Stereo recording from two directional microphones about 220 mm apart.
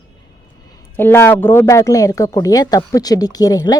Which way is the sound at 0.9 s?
10° left (ahead or behind).